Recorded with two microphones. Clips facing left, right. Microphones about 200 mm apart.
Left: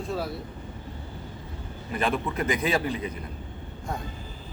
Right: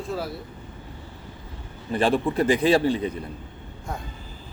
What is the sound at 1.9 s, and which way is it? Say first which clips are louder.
Speech: right 6 dB; 30° right (ahead or behind).